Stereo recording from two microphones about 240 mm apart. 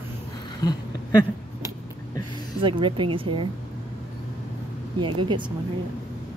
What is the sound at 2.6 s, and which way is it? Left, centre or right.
Speech, right.